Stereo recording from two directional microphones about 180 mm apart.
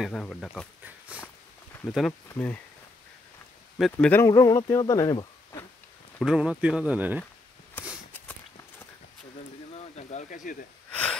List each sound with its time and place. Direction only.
0.0 s speech: 5° left (ahead or behind)
0.8 s speech: 10° right (ahead or behind)
2.2 s speech: 10° left (ahead or behind)
3.7 s speech: 5° left (ahead or behind)
4.2 s speech: 20° left (ahead or behind)
6.2 s speech: 5° right (ahead or behind)
7.8 s a sound: 10° left (ahead or behind)
8.1 s walk: 10° left (ahead or behind)
9.9 s speech: 45° left (ahead or behind)